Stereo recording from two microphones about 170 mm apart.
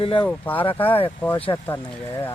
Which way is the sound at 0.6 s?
30° left (ahead or behind).